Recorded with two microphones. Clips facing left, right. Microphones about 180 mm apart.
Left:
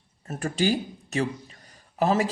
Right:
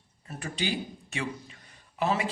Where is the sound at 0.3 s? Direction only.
45° left (ahead or behind).